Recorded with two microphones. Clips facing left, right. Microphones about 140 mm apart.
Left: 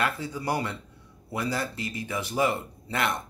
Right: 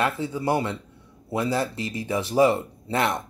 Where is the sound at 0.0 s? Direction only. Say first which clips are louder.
Right 4 dB; 25° right (ahead or behind).